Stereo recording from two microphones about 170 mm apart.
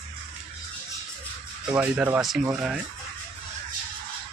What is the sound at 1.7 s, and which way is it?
Speech, 5° right (ahead or behind).